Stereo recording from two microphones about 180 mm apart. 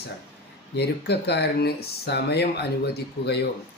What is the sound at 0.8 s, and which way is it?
Speech, 65° left (ahead or behind).